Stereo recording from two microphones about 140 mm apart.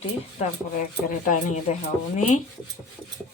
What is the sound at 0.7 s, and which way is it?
Speech, 70° left (ahead or behind).